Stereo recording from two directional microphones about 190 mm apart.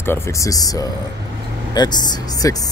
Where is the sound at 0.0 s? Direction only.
15° left (ahead or behind).